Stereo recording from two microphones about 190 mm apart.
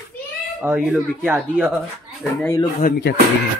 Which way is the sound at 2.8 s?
55° left (ahead or behind).